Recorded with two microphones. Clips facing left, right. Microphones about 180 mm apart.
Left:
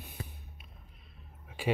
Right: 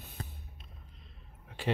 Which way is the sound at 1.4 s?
10° left (ahead or behind).